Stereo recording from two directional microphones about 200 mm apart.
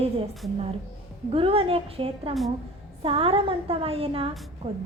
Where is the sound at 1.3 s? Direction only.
30° right (ahead or behind).